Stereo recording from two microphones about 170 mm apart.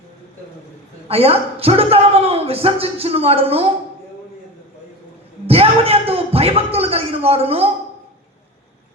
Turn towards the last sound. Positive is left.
turn(degrees=-35)  # may be behind; listen again after turning